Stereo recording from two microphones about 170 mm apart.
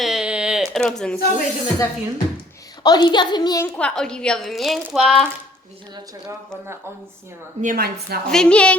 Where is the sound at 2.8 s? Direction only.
25° left (ahead or behind).